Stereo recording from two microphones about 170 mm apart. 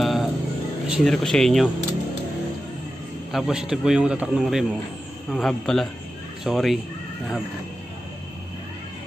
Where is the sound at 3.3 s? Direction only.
5° right (ahead or behind).